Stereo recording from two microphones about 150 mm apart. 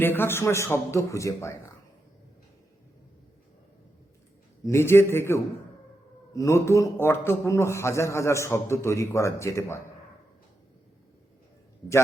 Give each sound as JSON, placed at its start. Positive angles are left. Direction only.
{"t": 0.0, "sound": "a man's voice", "side_deg": 15}
{"t": 4.6, "sound": "a man's voice", "side_deg": 15}